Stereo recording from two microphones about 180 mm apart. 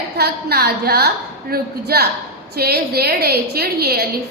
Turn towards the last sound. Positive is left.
turn(degrees=-60)  # may be behind; listen again after turning